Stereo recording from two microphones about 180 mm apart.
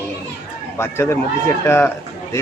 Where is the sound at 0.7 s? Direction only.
15° left (ahead or behind).